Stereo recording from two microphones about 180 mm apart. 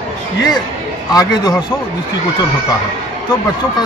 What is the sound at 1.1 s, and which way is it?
Speech, 20° left (ahead or behind).